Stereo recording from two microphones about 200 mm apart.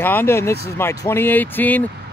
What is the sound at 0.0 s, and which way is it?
Speech, 10° left (ahead or behind).